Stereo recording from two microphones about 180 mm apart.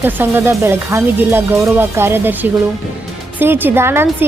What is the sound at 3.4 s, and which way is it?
Speech, 10° right (ahead or behind).